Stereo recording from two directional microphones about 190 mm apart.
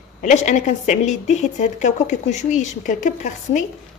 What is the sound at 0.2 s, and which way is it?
A woman's voice, 40° left (ahead or behind).